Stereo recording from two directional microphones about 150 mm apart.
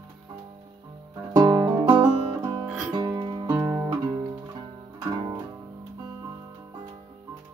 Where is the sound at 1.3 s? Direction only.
25° right (ahead or behind).